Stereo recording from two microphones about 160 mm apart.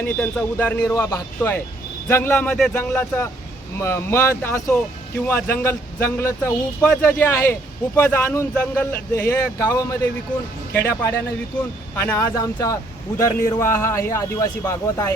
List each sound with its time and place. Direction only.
0.0 s a man's voice: 10° left (ahead or behind)